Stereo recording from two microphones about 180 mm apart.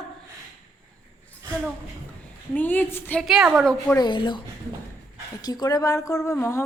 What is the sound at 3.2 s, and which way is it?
Speech, centre (ahead or behind).